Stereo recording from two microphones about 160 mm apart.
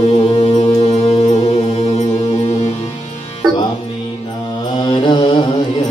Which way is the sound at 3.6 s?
30° left (ahead or behind).